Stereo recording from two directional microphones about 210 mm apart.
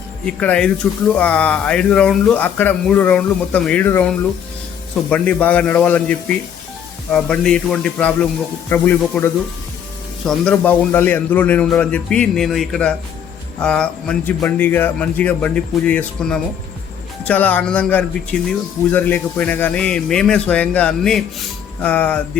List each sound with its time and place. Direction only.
0.3 s speech: 5° left (ahead or behind)